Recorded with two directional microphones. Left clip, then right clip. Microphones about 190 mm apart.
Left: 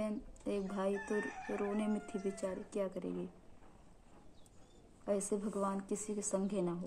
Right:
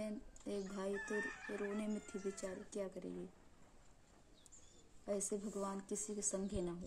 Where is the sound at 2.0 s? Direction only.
15° right (ahead or behind).